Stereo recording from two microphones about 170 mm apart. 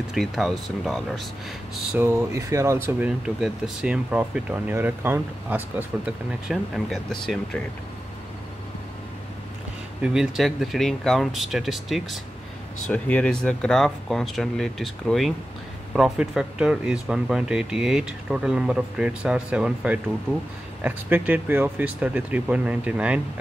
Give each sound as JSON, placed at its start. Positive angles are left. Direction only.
{"t": 0.1, "sound": "speech", "side_deg": 0}
{"t": 1.9, "sound": "speech", "side_deg": -15}
{"t": 3.3, "sound": "speech", "side_deg": -5}
{"t": 10.0, "sound": "speech", "side_deg": -5}